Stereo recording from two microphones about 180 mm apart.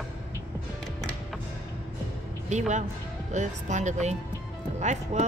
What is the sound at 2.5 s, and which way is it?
Speech, 40° right (ahead or behind).